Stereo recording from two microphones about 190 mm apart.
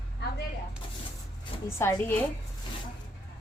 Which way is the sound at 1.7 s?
15° left (ahead or behind).